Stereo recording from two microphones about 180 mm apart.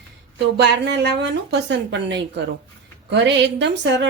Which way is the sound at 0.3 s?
70° right (ahead or behind).